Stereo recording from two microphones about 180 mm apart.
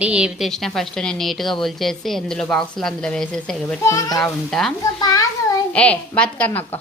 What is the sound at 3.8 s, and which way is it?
Speech, 15° left (ahead or behind).